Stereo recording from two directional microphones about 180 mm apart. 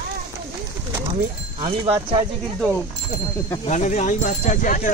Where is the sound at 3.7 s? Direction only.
40° left (ahead or behind).